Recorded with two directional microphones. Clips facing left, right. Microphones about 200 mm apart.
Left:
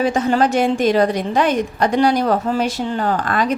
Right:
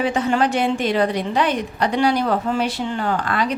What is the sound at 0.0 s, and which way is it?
A woman's voice, 40° left (ahead or behind).